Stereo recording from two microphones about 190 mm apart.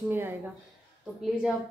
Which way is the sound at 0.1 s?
10° right (ahead or behind).